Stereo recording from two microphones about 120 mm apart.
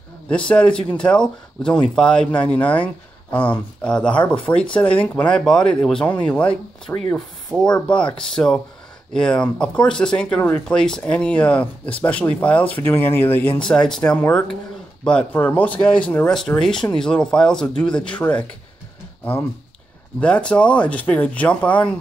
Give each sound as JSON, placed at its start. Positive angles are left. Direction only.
{"t": 0.5, "sound": "speech", "side_deg": 10}
{"t": 13.7, "sound": "speech", "side_deg": 5}
{"t": 20.2, "sound": "speech", "side_deg": 10}